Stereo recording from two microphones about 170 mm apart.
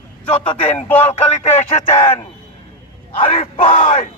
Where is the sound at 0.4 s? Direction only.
30° left (ahead or behind).